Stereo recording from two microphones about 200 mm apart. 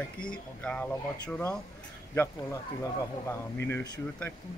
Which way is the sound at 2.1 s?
15° left (ahead or behind).